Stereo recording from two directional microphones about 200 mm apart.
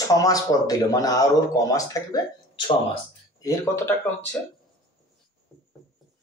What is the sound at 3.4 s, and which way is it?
Speech, 15° left (ahead or behind).